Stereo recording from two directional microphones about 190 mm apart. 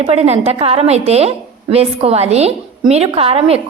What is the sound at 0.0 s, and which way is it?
A woman's voice, 35° right (ahead or behind).